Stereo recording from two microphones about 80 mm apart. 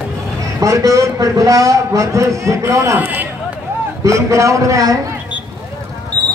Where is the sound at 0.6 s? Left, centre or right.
Right.